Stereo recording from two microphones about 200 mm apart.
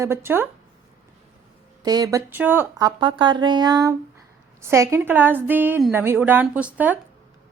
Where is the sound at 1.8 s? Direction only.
20° right (ahead or behind).